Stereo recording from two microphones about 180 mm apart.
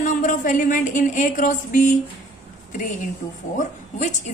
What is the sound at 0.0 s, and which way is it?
Speech, 45° left (ahead or behind).